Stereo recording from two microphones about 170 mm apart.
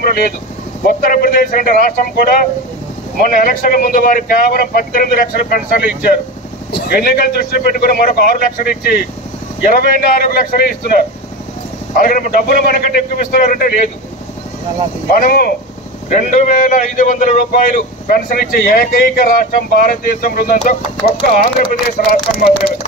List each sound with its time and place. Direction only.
0.8 s a man's voice: 55° left (ahead or behind)
15.0 s a man's voice: 55° left (ahead or behind)
16.1 s a man's voice: 50° left (ahead or behind)